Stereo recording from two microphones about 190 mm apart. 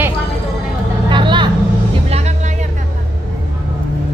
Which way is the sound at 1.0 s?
25° right (ahead or behind).